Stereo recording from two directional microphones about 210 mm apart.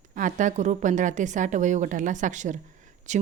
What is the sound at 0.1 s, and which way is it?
Speech, 35° right (ahead or behind).